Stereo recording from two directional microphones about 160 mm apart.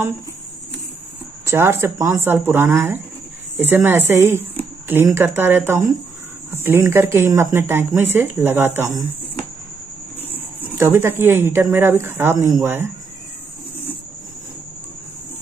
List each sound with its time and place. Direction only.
1.4 s speech: 15° right (ahead or behind)
10.2 s a sound: 15° left (ahead or behind)
10.7 s speech: 15° right (ahead or behind)